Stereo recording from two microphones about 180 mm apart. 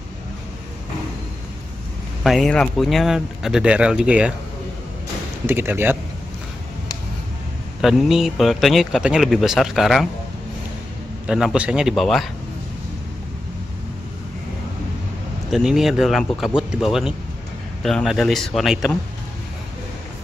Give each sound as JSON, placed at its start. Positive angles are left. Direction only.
{"t": 2.2, "sound": "speech", "side_deg": 0}
{"t": 5.5, "sound": "speech", "side_deg": -15}
{"t": 7.8, "sound": "speech", "side_deg": 0}
{"t": 11.2, "sound": "speech", "side_deg": -5}
{"t": 15.5, "sound": "speech", "side_deg": 0}